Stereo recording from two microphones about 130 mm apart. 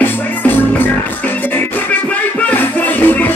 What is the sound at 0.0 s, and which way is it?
Music, 15° left (ahead or behind).